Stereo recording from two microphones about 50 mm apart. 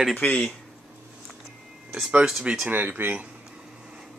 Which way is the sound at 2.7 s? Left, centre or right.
Right.